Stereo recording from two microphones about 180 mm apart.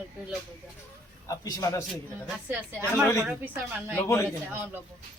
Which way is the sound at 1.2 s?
20° left (ahead or behind).